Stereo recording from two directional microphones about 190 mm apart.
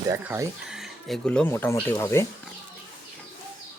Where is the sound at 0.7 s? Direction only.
Centre (ahead or behind).